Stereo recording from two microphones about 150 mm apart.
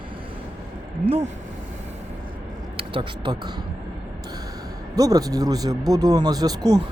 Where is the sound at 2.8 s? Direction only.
30° right (ahead or behind).